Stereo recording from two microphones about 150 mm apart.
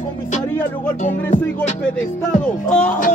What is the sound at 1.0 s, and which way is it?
Music, 55° left (ahead or behind).